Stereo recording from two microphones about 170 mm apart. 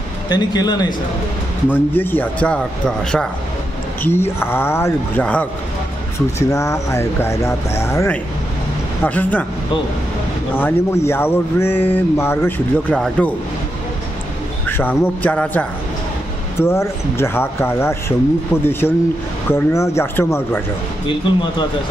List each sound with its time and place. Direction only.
0.3 s a man's voice: 25° left (ahead or behind)
1.7 s speech: 10° left (ahead or behind)
10.5 s speech: 15° left (ahead or behind)
14.7 s speech: 10° left (ahead or behind)
16.6 s speech: 15° left (ahead or behind)
21.1 s a man's voice: 25° left (ahead or behind)